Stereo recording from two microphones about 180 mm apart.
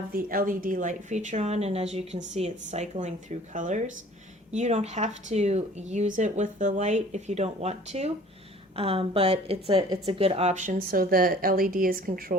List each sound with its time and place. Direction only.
0.1 s speech: 50° right (ahead or behind)